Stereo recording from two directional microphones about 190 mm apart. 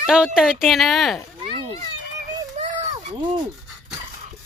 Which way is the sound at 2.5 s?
35° right (ahead or behind).